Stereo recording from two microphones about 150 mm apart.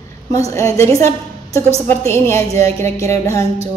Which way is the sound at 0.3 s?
20° left (ahead or behind).